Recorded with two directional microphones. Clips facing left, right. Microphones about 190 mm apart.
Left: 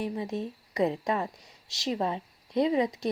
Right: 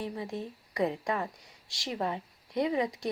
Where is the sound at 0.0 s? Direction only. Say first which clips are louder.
Left 4 dB; 20° left (ahead or behind).